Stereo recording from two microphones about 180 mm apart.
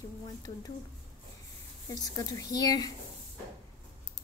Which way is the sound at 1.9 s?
20° left (ahead or behind).